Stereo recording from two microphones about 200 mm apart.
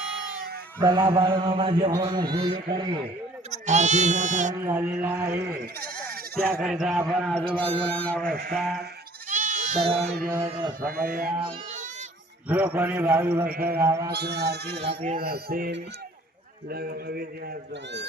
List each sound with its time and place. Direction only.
0.8 s a man's voice: 20° right (ahead or behind)
3.5 s speech: 35° right (ahead or behind)
4.6 s a man's voice: 10° right (ahead or behind)
5.8 s bleat: 50° right (ahead or behind)
6.6 s speech: centre (ahead or behind)
9.3 s bleat: 40° right (ahead or behind)
10.3 s a man's voice: 10° right (ahead or behind)
10.8 s a man's voice: 45° right (ahead or behind)
11.3 s speech: 35° right (ahead or behind)
12.5 s a man's voice: 5° right (ahead or behind)
14.1 s a man's voice: 55° right (ahead or behind)